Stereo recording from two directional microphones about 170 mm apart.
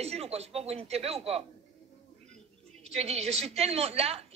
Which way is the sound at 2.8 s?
40° right (ahead or behind).